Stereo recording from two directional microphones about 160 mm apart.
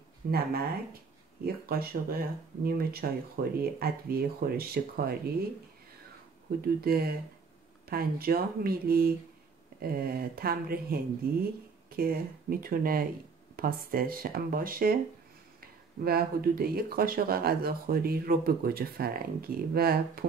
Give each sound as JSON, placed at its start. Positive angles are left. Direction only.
{"t": 0.3, "sound": "speech", "side_deg": -75}
{"t": 6.6, "sound": "speech", "side_deg": -70}
{"t": 16.0, "sound": "speech", "side_deg": -70}